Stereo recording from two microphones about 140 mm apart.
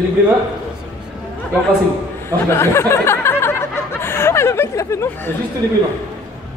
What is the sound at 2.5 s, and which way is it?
Speech, 20° left (ahead or behind).